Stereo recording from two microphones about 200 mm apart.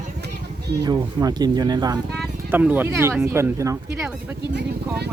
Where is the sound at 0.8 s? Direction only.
20° right (ahead or behind).